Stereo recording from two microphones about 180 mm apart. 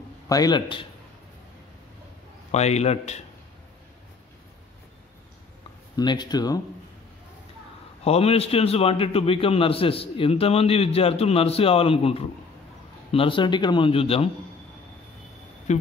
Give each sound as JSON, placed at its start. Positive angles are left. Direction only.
{"t": 0.3, "sound": "a man's voice", "side_deg": 20}
{"t": 2.5, "sound": "a man's voice", "side_deg": 35}
{"t": 5.9, "sound": "a man's voice", "side_deg": 25}
{"t": 8.0, "sound": "a man's voice", "side_deg": 35}
{"t": 15.7, "sound": "speech", "side_deg": 40}